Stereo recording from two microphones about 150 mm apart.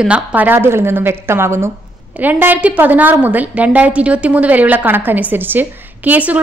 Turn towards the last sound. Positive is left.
turn(degrees=-10)  # may be behind; listen again after turning